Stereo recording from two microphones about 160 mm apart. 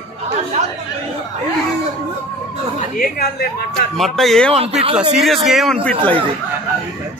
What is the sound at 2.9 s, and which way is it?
Speech, 65° left (ahead or behind).